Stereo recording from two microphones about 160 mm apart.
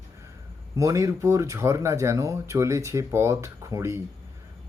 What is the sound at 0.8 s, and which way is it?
Speech, 20° right (ahead or behind).